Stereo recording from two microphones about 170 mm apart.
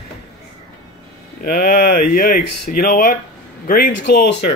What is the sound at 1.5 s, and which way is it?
Speech, 55° left (ahead or behind).